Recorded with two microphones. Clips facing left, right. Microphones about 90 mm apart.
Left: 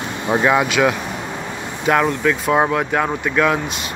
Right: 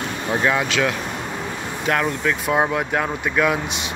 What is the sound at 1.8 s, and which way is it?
Speech, 5° left (ahead or behind).